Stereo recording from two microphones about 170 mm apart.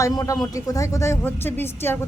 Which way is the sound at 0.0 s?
20° left (ahead or behind).